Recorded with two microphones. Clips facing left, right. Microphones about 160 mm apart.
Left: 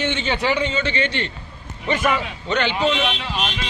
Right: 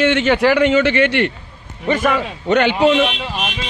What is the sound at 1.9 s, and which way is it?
Speech, 45° right (ahead or behind).